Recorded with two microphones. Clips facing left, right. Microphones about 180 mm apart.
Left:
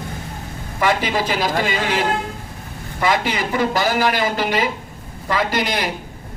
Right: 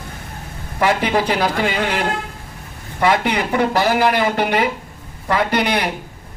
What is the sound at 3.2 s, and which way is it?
Speech, 60° right (ahead or behind).